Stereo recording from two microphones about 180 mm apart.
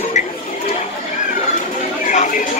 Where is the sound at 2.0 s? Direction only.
45° left (ahead or behind).